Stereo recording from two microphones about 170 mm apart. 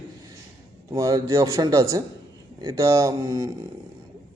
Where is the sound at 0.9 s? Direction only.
20° right (ahead or behind).